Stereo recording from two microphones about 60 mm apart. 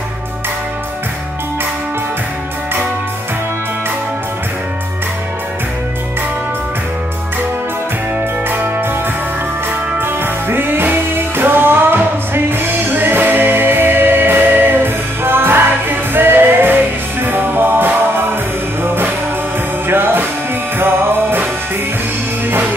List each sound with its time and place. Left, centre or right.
8.5 s music: right
9.9 s music: right